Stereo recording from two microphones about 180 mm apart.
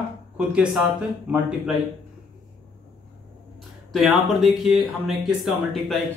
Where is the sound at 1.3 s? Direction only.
5° right (ahead or behind).